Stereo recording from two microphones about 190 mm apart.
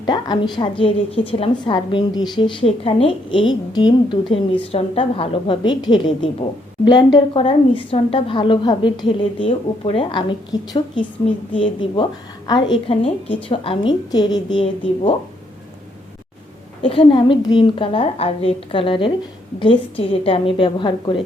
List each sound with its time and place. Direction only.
0.0 s a woman's voice: 25° left (ahead or behind)
16.8 s a woman's voice: 25° left (ahead or behind)